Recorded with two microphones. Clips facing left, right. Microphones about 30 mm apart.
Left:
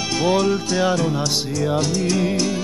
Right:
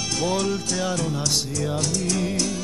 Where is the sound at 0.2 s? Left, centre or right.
Centre.